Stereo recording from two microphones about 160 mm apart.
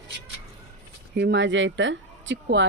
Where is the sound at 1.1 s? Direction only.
90° right.